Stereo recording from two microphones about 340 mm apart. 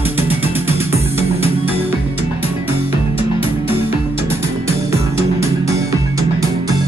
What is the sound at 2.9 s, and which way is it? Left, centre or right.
Music, centre.